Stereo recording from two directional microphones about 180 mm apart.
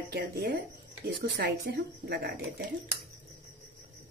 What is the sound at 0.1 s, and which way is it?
Speech, 55° right (ahead or behind).